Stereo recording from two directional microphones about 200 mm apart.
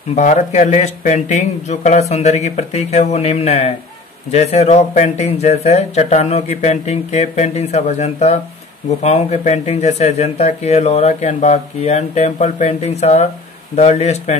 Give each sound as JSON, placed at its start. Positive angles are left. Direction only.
{"t": 0.1, "sound": "speech", "side_deg": 35}